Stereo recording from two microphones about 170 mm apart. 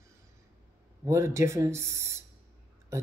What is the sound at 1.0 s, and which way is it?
A woman's voice, 15° right (ahead or behind).